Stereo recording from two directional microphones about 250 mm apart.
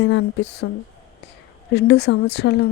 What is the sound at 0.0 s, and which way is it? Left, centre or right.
Speech, left.